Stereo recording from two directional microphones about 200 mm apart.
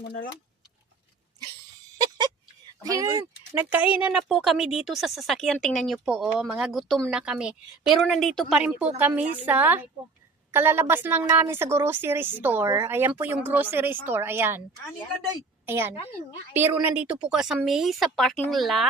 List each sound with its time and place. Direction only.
0.0 s speech: 60° left (ahead or behind)
2.0 s a sound: 20° right (ahead or behind)
2.8 s a woman's voice: 15° right (ahead or behind)
15.6 s a woman's voice: 10° right (ahead or behind)